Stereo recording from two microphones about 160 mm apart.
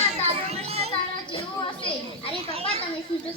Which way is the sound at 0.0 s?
45° right (ahead or behind).